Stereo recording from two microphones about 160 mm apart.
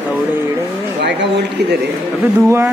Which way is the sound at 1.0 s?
90° right.